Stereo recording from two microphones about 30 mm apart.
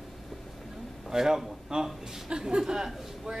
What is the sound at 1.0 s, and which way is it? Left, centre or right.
A man's voice, centre.